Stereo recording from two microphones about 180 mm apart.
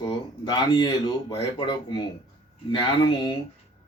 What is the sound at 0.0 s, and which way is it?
Speech, 25° left (ahead or behind).